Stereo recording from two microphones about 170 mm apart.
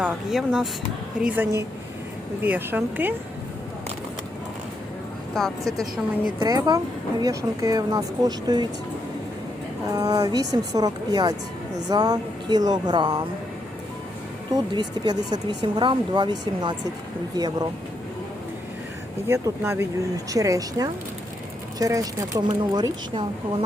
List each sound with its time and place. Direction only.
0.0 s speech: centre (ahead or behind)
6.4 s speech: 20° right (ahead or behind)
9.9 s speech: 20° right (ahead or behind)
14.5 s speech: 25° right (ahead or behind)
19.3 s speech: 15° right (ahead or behind)